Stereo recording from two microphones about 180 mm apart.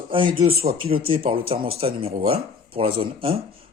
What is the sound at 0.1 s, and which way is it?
Speech, 30° right (ahead or behind).